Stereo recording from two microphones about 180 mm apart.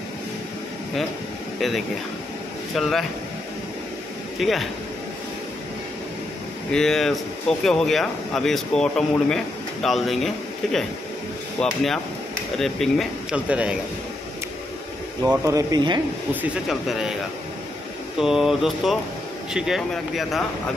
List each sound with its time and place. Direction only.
2.7 s speech: centre (ahead or behind)
4.4 s speech: centre (ahead or behind)
6.7 s speech: centre (ahead or behind)
15.2 s speech: 20° right (ahead or behind)
16.3 s speech: centre (ahead or behind)
18.2 s speech: centre (ahead or behind)